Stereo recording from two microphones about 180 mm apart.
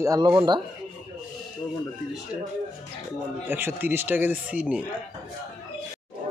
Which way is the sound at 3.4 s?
10° right (ahead or behind).